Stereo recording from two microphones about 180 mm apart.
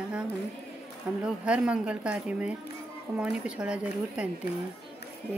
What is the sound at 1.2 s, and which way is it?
A woman's voice, 5° right (ahead or behind).